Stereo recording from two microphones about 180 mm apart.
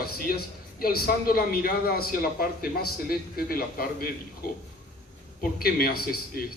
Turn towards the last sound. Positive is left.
turn(degrees=55)  # may be behind; listen again after turning